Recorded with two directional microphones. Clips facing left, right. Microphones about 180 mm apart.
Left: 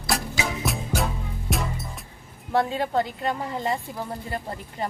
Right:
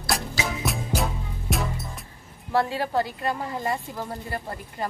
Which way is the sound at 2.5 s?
20° left (ahead or behind).